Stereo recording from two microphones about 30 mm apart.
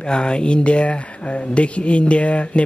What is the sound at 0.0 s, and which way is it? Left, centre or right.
Speech, left.